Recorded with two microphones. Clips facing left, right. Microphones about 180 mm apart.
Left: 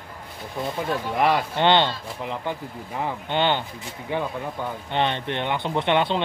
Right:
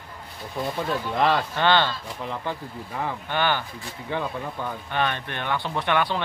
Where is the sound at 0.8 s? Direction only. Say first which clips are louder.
Left 1 dB; 10° left (ahead or behind).